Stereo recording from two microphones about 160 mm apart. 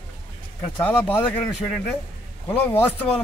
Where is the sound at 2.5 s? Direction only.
15° left (ahead or behind).